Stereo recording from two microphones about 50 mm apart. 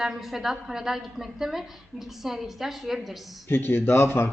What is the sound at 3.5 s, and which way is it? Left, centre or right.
Speech, left.